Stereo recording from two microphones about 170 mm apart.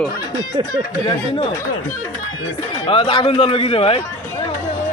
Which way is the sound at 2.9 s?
30° left (ahead or behind).